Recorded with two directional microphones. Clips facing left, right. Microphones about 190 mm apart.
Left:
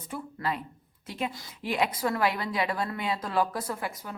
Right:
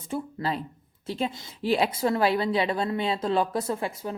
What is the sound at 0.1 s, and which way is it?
A woman's voice, 30° right (ahead or behind).